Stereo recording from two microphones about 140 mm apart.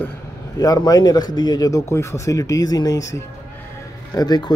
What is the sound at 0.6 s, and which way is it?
Speech, 25° left (ahead or behind).